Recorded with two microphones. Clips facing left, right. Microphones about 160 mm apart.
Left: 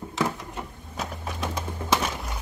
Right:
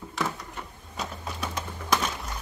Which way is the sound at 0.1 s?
20° left (ahead or behind).